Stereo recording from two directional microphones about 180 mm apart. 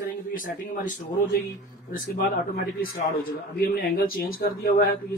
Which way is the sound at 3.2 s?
55° left (ahead or behind).